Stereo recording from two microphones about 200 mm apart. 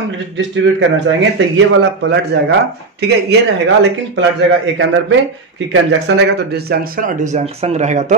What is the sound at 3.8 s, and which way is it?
A man's voice, 70° right (ahead or behind).